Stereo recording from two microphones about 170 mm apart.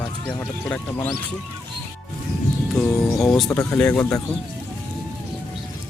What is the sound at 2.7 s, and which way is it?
Speech, 5° left (ahead or behind).